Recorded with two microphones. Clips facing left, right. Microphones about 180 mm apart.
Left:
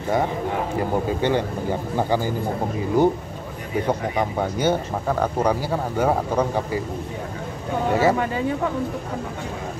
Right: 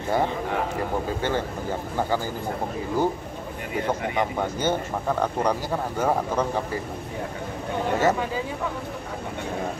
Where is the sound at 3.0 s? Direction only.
15° left (ahead or behind).